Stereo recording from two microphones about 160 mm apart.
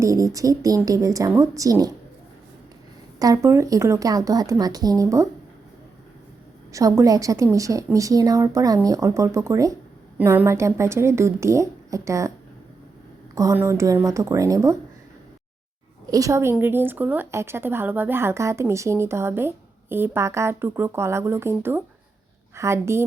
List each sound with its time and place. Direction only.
0.0 s a woman's voice: 20° right (ahead or behind)
3.2 s a woman's voice: 20° right (ahead or behind)
6.7 s a woman's voice: 20° right (ahead or behind)
13.3 s a woman's voice: 20° right (ahead or behind)
16.0 s a woman's voice: 20° right (ahead or behind)